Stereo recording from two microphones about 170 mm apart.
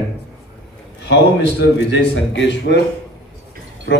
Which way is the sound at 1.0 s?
90° left.